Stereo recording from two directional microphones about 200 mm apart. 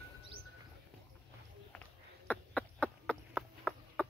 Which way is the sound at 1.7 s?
5° left (ahead or behind).